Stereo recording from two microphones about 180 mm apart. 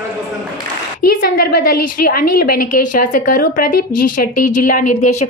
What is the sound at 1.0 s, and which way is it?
A woman's voice, 55° left (ahead or behind).